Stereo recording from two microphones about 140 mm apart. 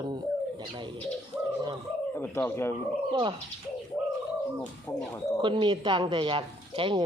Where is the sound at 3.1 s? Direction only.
35° right (ahead or behind).